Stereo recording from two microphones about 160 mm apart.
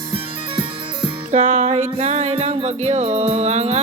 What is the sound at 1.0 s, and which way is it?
Music, 45° right (ahead or behind).